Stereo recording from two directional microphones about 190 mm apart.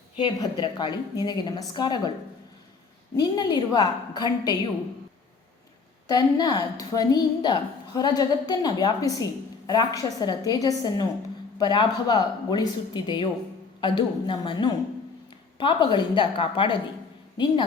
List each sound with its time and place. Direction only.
0.2 s a woman's voice: 25° left (ahead or behind)
3.2 s a woman's voice: 20° left (ahead or behind)
6.1 s a woman's voice: 20° left (ahead or behind)